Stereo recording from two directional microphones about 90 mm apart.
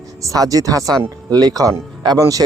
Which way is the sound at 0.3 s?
40° right (ahead or behind).